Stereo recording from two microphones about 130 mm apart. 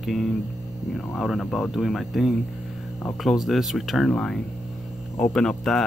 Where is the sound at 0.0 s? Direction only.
Centre (ahead or behind).